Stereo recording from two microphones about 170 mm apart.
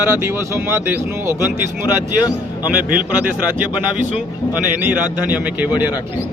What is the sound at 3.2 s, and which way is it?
Speech, 10° right (ahead or behind).